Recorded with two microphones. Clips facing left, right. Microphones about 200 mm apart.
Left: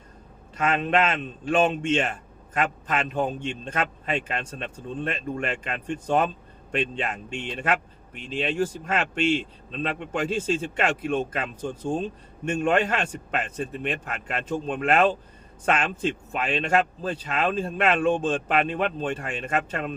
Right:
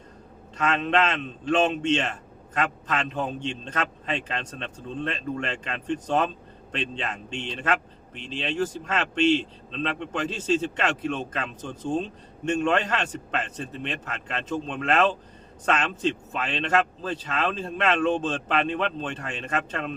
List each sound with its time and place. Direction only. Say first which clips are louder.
0.6 s speech: left 1 dB; 10° left (ahead or behind)
12.5 s speech: left 1 dB; 10° left (ahead or behind)